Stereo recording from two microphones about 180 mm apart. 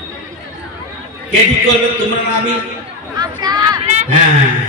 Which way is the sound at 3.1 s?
20° right (ahead or behind).